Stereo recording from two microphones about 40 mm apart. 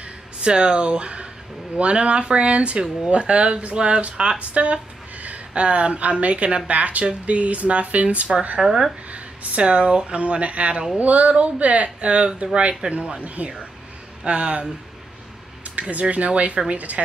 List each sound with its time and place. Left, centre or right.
0.0 s speech: right
8.5 s speech: centre
9.1 s speech: right
15.9 s speech: right